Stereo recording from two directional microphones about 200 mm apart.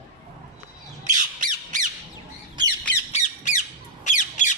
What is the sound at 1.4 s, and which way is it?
Squawk, 40° right (ahead or behind).